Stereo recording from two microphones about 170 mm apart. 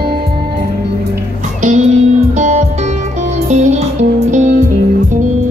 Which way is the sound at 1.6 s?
45° right (ahead or behind).